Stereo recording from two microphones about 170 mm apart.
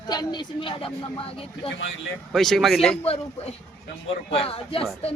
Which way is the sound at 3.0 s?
35° left (ahead or behind).